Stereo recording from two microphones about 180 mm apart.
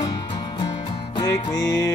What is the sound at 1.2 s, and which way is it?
Music, 20° left (ahead or behind).